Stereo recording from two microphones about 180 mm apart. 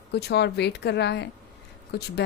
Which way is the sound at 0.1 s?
70° left (ahead or behind).